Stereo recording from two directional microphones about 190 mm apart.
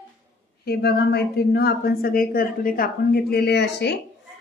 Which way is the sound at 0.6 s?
55° left (ahead or behind).